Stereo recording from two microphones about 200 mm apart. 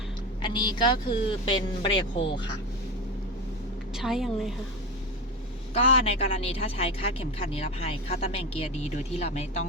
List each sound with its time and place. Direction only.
0.4 s speech: 20° left (ahead or behind)
3.9 s a woman's voice: centre (ahead or behind)
5.7 s speech: 30° left (ahead or behind)